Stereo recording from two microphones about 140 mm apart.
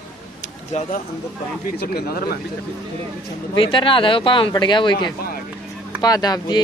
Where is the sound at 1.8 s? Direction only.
90° left.